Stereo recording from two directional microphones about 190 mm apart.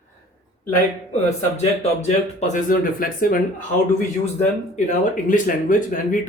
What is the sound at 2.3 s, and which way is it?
Speech, 40° left (ahead or behind).